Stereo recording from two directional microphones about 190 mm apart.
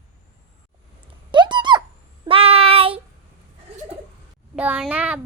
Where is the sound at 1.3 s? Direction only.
25° right (ahead or behind).